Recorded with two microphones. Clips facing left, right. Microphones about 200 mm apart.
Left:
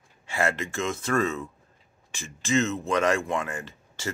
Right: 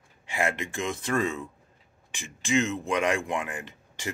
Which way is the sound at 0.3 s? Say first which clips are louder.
Left 2 dB; 15° right (ahead or behind).